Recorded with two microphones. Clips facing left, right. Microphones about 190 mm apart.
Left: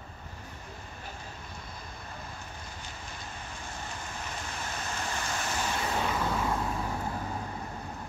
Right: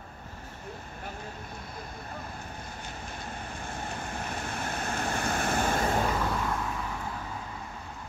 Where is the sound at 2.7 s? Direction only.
55° right (ahead or behind).